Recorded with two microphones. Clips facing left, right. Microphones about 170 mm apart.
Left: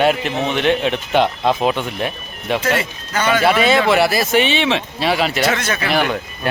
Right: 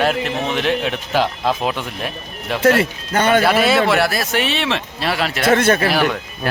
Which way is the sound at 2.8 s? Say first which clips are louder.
Right 3 dB; 55° right (ahead or behind).